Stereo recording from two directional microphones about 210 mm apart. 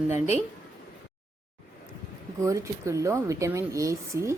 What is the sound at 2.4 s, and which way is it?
Speech, 15° right (ahead or behind).